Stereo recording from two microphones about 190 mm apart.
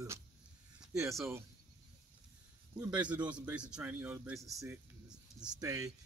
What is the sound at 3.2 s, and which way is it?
A man's voice, 5° right (ahead or behind).